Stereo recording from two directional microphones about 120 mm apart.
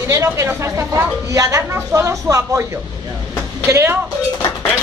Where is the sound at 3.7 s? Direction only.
20° right (ahead or behind).